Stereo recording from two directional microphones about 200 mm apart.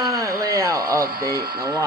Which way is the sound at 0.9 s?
15° right (ahead or behind).